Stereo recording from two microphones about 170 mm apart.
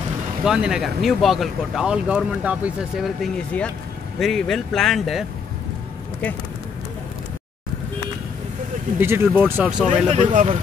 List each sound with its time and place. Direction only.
0.4 s speech: 5° right (ahead or behind)
9.0 s speech: 15° right (ahead or behind)
10.0 s speech: 40° right (ahead or behind)